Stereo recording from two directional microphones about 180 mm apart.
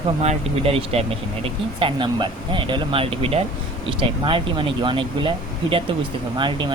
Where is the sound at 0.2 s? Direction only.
35° right (ahead or behind).